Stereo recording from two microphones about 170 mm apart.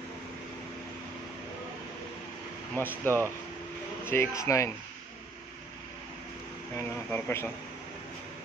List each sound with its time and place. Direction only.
2.7 s speech: 10° left (ahead or behind)
6.8 s speech: 10° left (ahead or behind)